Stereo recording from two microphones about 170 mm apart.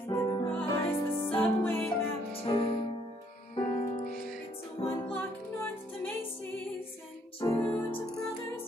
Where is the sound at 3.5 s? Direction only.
30° left (ahead or behind).